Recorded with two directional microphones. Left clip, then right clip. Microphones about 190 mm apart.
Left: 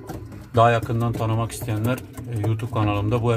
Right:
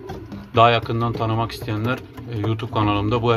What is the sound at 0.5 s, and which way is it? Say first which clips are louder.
Speech: right 2 dB; 25° right (ahead or behind).